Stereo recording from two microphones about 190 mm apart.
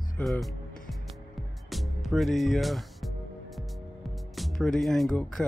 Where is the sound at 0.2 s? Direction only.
Centre (ahead or behind).